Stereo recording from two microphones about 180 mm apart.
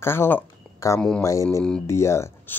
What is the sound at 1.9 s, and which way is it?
Speech, 15° left (ahead or behind).